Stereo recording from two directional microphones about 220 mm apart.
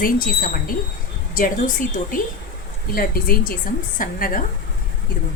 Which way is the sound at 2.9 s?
40° left (ahead or behind).